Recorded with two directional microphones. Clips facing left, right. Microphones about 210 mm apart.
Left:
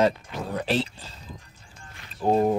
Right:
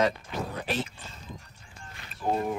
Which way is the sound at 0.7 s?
30° left (ahead or behind).